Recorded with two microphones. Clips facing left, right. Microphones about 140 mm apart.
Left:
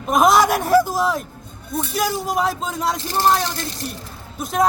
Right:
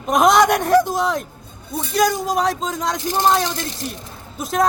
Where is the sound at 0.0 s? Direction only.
5° left (ahead or behind).